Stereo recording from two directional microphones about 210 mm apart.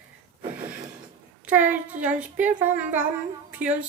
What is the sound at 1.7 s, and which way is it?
Speech, 35° right (ahead or behind).